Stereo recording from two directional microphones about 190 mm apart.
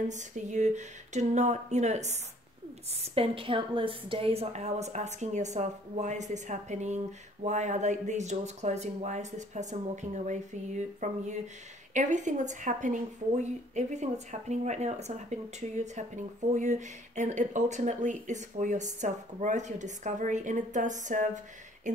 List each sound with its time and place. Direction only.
0.1 s a woman's voice: 40° right (ahead or behind)